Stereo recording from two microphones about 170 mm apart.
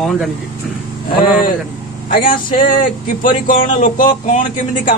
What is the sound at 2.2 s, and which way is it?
Speech, 55° left (ahead or behind).